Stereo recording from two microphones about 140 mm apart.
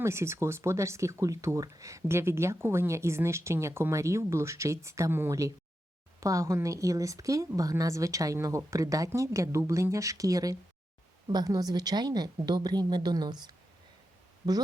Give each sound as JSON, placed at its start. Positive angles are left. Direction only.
{"t": 0.0, "sound": "speech", "side_deg": -20}